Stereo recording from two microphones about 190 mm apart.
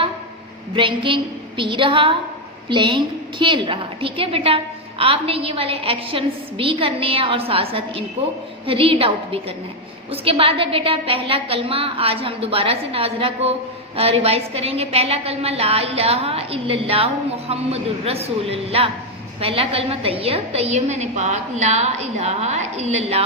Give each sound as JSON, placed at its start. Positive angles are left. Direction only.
{"t": 0.8, "sound": "a woman's voice", "side_deg": -25}